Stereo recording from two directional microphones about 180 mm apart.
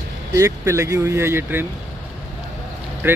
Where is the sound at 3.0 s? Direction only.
10° right (ahead or behind).